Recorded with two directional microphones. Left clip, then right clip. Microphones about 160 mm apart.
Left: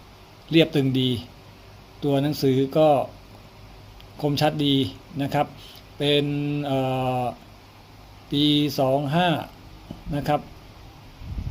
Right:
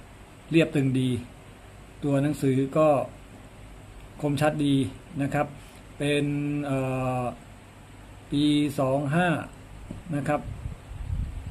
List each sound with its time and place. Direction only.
0.5 s mantra: 15° left (ahead or behind)
4.2 s mantra: 15° left (ahead or behind)